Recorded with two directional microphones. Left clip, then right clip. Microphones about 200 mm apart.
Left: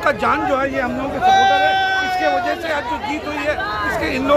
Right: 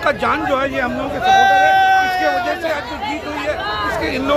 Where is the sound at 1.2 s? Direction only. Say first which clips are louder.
Right 2 dB; 55° right (ahead or behind).